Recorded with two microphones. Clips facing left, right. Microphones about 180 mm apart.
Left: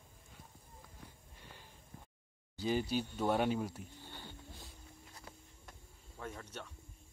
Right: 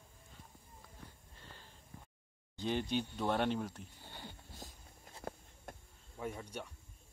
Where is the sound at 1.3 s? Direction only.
15° left (ahead or behind).